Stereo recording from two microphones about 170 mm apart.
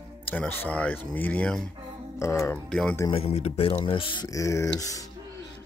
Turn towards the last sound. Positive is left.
turn(degrees=20)  # may be behind; listen again after turning